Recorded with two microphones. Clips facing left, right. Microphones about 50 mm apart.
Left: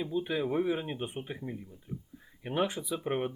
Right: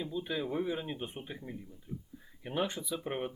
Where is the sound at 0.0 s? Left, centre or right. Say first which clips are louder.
Left 4 dB; centre.